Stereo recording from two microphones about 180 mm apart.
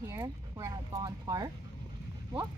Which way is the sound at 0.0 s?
15° right (ahead or behind).